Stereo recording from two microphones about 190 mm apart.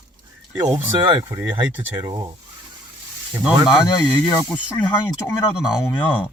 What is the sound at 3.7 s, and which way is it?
Speech, 20° left (ahead or behind).